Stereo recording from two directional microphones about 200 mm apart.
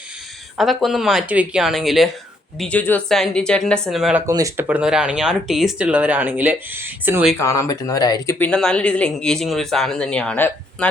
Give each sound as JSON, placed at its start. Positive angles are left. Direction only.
{"t": 0.5, "sound": "speech", "side_deg": 0}
{"t": 4.3, "sound": "speech", "side_deg": -15}
{"t": 7.3, "sound": "speech", "side_deg": 15}
{"t": 8.4, "sound": "speech", "side_deg": 5}